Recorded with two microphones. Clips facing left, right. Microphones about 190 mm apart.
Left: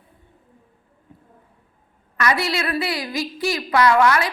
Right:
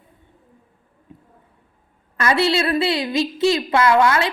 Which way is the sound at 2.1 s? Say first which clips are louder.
Right 4 dB; 25° right (ahead or behind).